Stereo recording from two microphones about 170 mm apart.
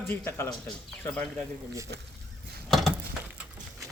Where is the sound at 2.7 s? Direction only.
Centre (ahead or behind).